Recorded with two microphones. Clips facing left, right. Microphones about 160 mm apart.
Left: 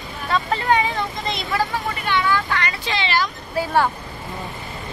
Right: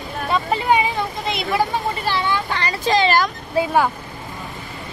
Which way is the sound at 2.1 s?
35° right (ahead or behind).